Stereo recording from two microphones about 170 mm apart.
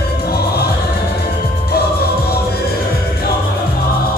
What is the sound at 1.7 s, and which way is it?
Music, 65° left (ahead or behind).